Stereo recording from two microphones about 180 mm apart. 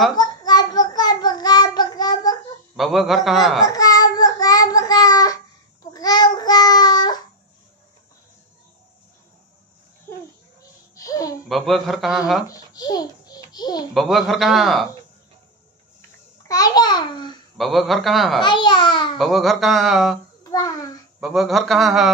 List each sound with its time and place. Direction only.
0.1 s child singing: 20° left (ahead or behind)
2.7 s a man's voice: centre (ahead or behind)
3.6 s child singing: 20° left (ahead or behind)
10.6 s babbling: 20° left (ahead or behind)
11.4 s a man's voice: centre (ahead or behind)
12.4 s a child's voice: 20° left (ahead or behind)
13.9 s a man's voice: centre (ahead or behind)
16.4 s babbling: 20° left (ahead or behind)
17.6 s a man's voice: centre (ahead or behind)
18.4 s babbling: 25° left (ahead or behind)
19.1 s a man's voice: centre (ahead or behind)
20.4 s a sound: 20° left (ahead or behind)
21.2 s a man's voice: centre (ahead or behind)